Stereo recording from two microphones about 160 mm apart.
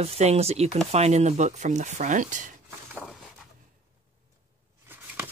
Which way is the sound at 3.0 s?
Centre (ahead or behind).